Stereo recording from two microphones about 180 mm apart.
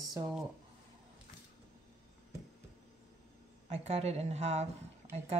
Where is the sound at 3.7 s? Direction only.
35° right (ahead or behind).